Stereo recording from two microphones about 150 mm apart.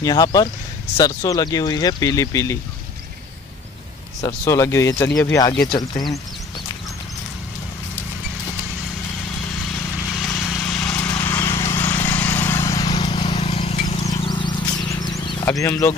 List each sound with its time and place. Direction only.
0.0 s speech: 25° left (ahead or behind)
4.5 s speech: 20° left (ahead or behind)
10.0 s vehicle: centre (ahead or behind); by 13.8 s 45° left (ahead or behind)
14.2 s a sound: 30° left (ahead or behind)
15.4 s speech: 20° left (ahead or behind)